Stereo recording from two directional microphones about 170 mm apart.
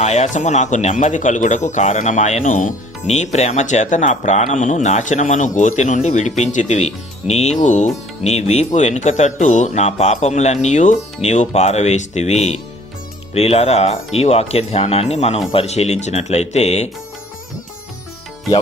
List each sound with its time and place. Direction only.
0.0 s speech: 40° left (ahead or behind)